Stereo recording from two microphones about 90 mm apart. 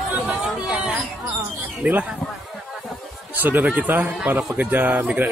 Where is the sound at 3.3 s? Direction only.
20° right (ahead or behind).